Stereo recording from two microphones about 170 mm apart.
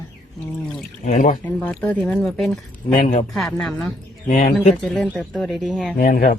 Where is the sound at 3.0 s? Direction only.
45° left (ahead or behind).